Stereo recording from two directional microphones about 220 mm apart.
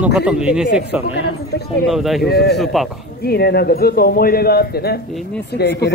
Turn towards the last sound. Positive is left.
turn(degrees=50)  # may be behind; listen again after turning